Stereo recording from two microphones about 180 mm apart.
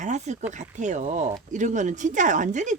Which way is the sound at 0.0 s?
40° right (ahead or behind).